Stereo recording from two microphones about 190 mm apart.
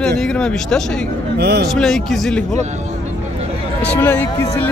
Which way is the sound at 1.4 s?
60° right (ahead or behind).